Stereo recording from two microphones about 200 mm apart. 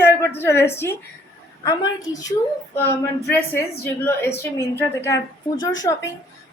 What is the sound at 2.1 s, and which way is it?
A woman's voice, 20° left (ahead or behind).